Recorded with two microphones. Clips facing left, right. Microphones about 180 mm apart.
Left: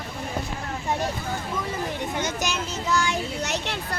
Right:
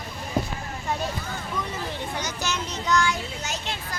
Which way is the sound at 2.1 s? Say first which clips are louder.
Left 4 dB; 20° left (ahead or behind).